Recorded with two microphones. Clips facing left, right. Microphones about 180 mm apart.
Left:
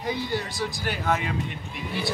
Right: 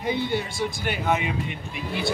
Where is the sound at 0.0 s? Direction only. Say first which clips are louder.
Right 3 dB; 25° right (ahead or behind).